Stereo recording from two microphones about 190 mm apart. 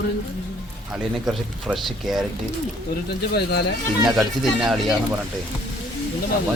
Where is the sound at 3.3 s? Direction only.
60° left (ahead or behind).